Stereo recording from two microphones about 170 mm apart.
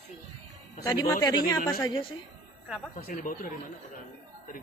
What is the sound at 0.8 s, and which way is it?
Speech, 20° left (ahead or behind).